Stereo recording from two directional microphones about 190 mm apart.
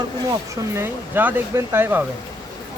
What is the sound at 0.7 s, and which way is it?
Speech, 10° right (ahead or behind).